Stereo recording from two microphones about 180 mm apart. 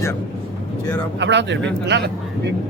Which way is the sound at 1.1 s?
80° right.